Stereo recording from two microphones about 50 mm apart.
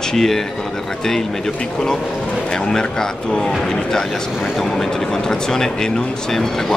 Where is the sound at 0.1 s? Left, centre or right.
Centre.